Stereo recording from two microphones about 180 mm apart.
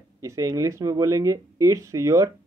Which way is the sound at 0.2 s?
20° right (ahead or behind).